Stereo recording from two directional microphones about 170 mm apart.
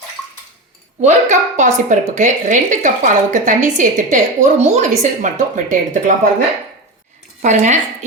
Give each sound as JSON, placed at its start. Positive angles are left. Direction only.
{"t": 1.0, "sound": "a woman's voice", "side_deg": -45}
{"t": 7.4, "sound": "a woman's voice", "side_deg": -45}